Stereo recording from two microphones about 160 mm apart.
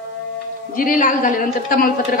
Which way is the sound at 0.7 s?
60° left (ahead or behind).